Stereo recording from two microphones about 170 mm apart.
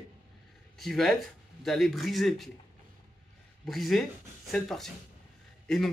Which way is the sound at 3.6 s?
Centre (ahead or behind).